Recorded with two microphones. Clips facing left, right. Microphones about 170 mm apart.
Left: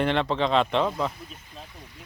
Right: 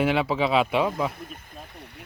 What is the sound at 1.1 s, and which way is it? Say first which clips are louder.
Speech: right 4 dB; 55° right (ahead or behind).